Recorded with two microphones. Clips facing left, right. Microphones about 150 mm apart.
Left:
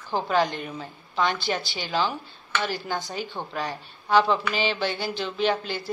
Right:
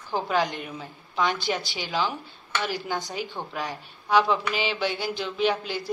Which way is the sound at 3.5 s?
10° right (ahead or behind).